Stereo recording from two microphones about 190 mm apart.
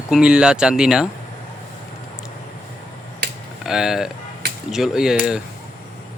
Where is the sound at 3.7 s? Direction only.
Centre (ahead or behind).